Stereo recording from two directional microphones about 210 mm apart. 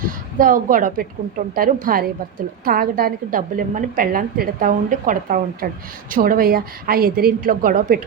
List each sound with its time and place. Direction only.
0.0 s a woman's voice: 40° right (ahead or behind)